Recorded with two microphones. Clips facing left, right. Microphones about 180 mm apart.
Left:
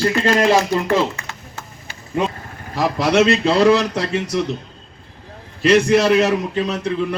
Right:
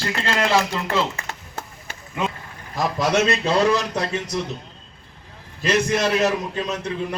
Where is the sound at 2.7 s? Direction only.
65° left (ahead or behind).